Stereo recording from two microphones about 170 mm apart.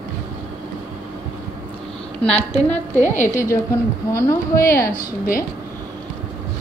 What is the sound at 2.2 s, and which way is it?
A woman's voice, 5° left (ahead or behind).